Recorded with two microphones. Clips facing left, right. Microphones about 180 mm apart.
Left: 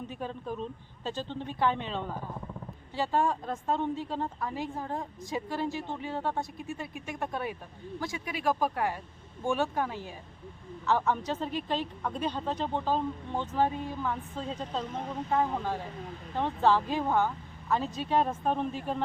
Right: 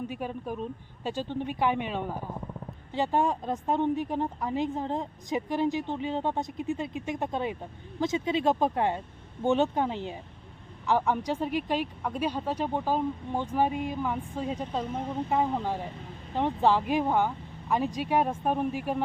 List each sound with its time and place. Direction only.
0.1 s a woman's voice: 10° right (ahead or behind)